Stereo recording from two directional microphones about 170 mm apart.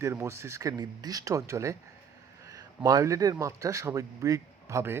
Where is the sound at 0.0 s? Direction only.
15° right (ahead or behind).